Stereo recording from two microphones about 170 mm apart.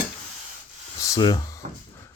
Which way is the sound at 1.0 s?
25° left (ahead or behind).